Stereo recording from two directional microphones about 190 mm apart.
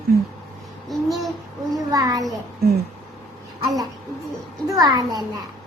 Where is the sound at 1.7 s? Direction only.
20° right (ahead or behind).